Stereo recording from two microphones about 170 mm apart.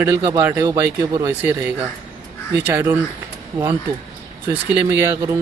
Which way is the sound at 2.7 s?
10° right (ahead or behind).